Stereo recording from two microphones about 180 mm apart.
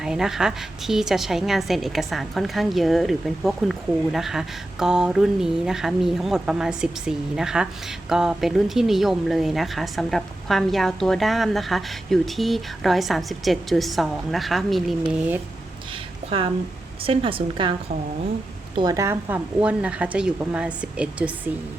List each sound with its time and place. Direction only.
0.0 s a woman's voice: 5° right (ahead or behind)
16.2 s a sound: 35° right (ahead or behind)
17.0 s a woman's voice: 30° right (ahead or behind)
18.8 s speech: 20° right (ahead or behind)